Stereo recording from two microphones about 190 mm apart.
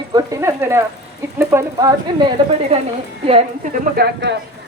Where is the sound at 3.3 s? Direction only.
35° right (ahead or behind); by 4.4 s 60° right (ahead or behind).